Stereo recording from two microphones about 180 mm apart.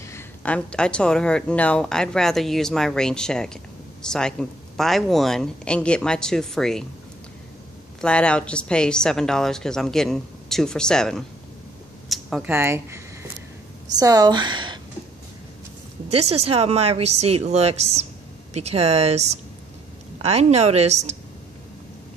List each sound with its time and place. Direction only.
0.0 s speech: 10° left (ahead or behind)
8.0 s speech: 5° left (ahead or behind)
12.1 s a sound: centre (ahead or behind)
12.4 s speech: 15° right (ahead or behind)
16.1 s speech: 35° right (ahead or behind)